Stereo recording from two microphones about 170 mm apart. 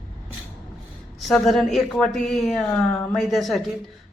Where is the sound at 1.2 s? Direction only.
Centre (ahead or behind).